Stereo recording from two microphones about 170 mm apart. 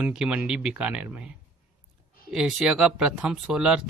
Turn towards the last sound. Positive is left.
turn(degrees=-5)  # may be behind; listen again after turning